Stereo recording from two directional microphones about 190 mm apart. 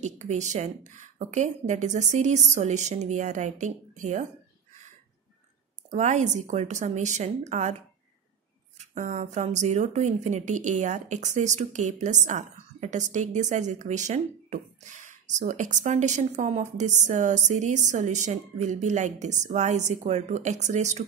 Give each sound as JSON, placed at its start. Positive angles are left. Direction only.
{"t": 0.0, "sound": "speech", "side_deg": -40}
{"t": 5.9, "sound": "speech", "side_deg": -40}
{"t": 8.7, "sound": "speech", "side_deg": -40}